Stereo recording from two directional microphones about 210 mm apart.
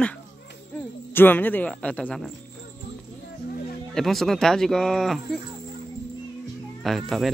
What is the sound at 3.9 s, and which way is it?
Speech, centre (ahead or behind).